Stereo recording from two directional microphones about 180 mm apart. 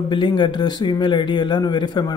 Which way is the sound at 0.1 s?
25° left (ahead or behind).